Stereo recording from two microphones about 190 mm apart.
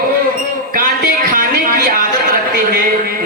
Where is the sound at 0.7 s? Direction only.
50° right (ahead or behind).